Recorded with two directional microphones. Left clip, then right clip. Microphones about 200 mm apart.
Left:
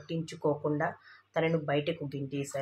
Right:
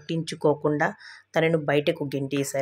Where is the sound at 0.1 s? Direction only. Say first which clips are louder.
Right 8 dB; 35° right (ahead or behind).